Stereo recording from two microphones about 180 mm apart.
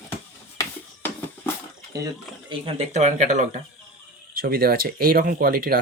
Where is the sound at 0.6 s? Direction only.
10° left (ahead or behind).